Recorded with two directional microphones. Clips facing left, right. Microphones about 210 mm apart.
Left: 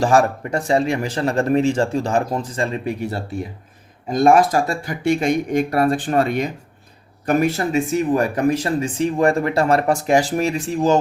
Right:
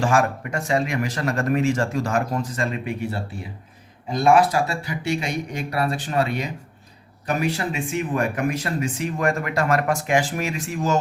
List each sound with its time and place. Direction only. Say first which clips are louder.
0.0 s speech: left 4 dB; 35° left (ahead or behind)